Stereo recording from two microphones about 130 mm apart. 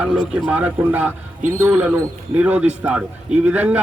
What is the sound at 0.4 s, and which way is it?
Speech, 10° right (ahead or behind).